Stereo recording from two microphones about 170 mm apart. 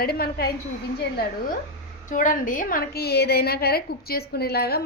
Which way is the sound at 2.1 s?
50° left (ahead or behind).